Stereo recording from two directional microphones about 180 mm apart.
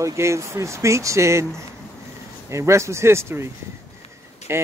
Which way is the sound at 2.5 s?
15° right (ahead or behind).